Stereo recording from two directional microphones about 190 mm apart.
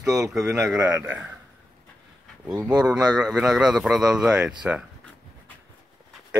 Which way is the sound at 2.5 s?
20° right (ahead or behind).